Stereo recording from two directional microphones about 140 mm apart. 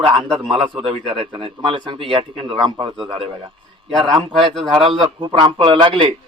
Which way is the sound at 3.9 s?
5° left (ahead or behind).